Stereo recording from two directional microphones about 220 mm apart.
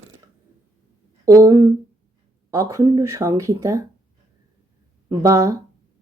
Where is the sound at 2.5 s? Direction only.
15° right (ahead or behind).